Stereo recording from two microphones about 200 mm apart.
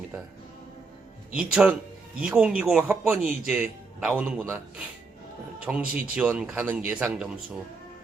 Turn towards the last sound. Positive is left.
turn(degrees=-5)  # may be behind; listen again after turning